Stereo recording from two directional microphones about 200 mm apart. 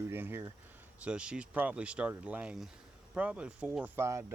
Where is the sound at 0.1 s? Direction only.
10° right (ahead or behind).